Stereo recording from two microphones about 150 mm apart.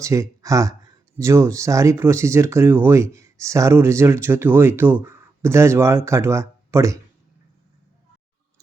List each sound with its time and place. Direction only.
0.0 s speech: 20° right (ahead or behind)